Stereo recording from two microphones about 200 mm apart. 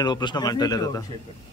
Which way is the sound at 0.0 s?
20° left (ahead or behind).